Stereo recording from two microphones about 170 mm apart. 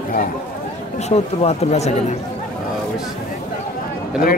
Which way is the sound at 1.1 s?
40° left (ahead or behind).